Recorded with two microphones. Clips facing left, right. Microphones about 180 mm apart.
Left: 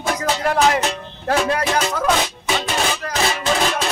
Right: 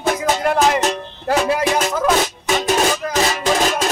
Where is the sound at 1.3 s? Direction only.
Centre (ahead or behind).